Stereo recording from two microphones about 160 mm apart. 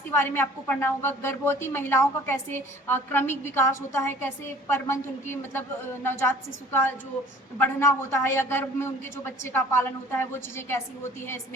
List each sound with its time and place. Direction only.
0.1 s a woman's voice: 15° left (ahead or behind)